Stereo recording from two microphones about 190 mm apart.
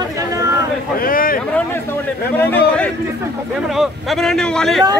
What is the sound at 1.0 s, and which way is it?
Speech, 50° left (ahead or behind).